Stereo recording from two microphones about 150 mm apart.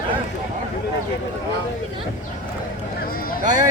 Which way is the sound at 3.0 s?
75° left (ahead or behind).